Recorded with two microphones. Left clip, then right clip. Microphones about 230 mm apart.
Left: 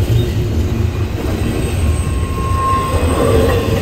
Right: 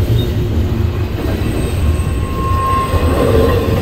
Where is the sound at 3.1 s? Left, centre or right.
Left.